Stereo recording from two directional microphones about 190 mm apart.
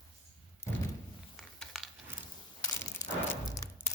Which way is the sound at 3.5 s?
15° left (ahead or behind).